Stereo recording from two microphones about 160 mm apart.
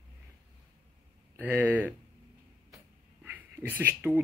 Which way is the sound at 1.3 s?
10° right (ahead or behind).